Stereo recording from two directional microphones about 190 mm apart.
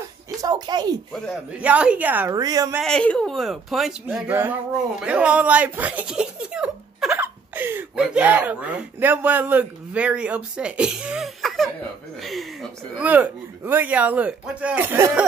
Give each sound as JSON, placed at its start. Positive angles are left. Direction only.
{"t": 0.4, "sound": "speech", "side_deg": -20}
{"t": 1.1, "sound": "speech", "side_deg": 0}
{"t": 2.8, "sound": "speech", "side_deg": 5}